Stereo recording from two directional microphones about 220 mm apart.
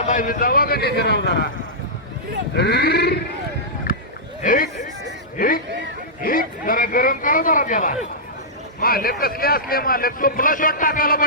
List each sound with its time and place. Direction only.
0.0 s a man's voice: 35° left (ahead or behind)
2.6 s a man's voice: 50° left (ahead or behind)
3.9 s a sound: 40° left (ahead or behind)
4.4 s a man's voice: 40° left (ahead or behind)